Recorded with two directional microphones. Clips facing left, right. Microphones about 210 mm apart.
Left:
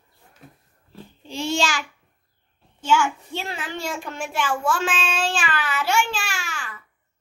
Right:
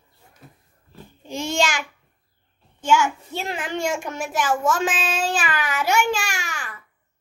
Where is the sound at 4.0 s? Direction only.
40° right (ahead or behind).